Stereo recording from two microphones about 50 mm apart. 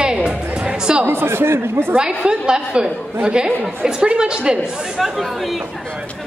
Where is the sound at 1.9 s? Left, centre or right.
Centre.